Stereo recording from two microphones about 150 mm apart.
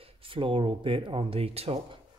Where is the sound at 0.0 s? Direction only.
35° right (ahead or behind).